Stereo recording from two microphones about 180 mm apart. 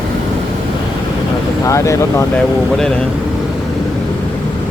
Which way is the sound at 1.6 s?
15° left (ahead or behind).